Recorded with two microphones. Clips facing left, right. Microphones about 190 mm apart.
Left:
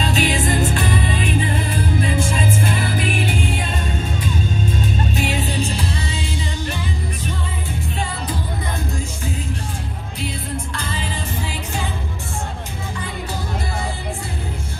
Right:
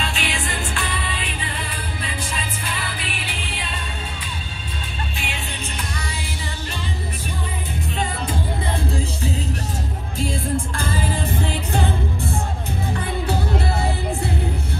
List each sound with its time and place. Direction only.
0.0 s music: 40° left (ahead or behind)
5.1 s music: 40° left (ahead or behind)
10.2 s music: 50° right (ahead or behind)